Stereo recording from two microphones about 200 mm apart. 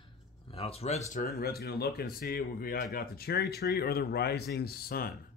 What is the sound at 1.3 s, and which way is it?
Speech, 50° left (ahead or behind).